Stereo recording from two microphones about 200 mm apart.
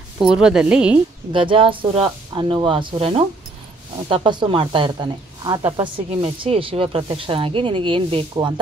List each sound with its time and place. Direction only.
0.2 s a woman's voice: 5° right (ahead or behind)
1.3 s speech: 25° right (ahead or behind)